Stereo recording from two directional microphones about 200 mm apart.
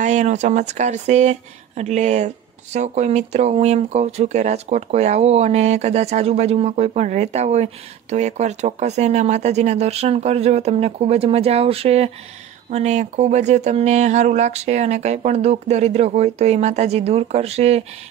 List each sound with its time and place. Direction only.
0.0 s speech: 35° right (ahead or behind)